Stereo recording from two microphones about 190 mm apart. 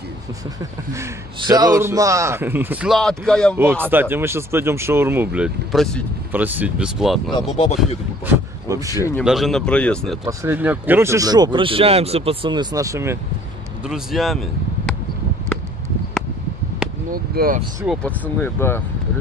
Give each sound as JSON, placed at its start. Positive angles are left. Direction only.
{"t": 0.6, "sound": "a man's voice", "side_deg": -15}
{"t": 3.5, "sound": "a man's voice", "side_deg": -10}
{"t": 6.3, "sound": "a man's voice", "side_deg": -10}
{"t": 7.5, "sound": "speech", "side_deg": 30}
{"t": 8.6, "sound": "speech", "side_deg": -15}
{"t": 9.2, "sound": "speech", "side_deg": 0}
{"t": 10.2, "sound": "speech", "side_deg": -10}
{"t": 13.8, "sound": "speech", "side_deg": 0}
{"t": 17.1, "sound": "speech", "side_deg": -50}
{"t": 17.8, "sound": "speech", "side_deg": 10}